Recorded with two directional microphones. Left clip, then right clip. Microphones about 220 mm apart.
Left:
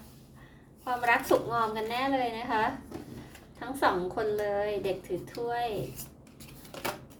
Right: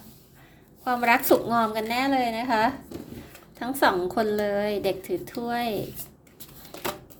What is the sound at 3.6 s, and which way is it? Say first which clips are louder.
A woman's voice: right 5 dB; 45° right (ahead or behind).